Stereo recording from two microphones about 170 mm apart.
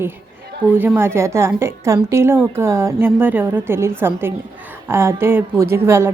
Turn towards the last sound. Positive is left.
turn(degrees=-15)  # may be behind; listen again after turning